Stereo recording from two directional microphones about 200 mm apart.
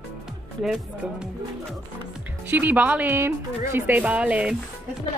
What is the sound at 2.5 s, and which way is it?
Speech, 10° right (ahead or behind).